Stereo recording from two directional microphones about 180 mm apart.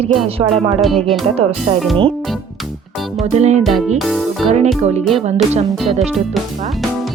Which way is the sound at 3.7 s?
Centre (ahead or behind).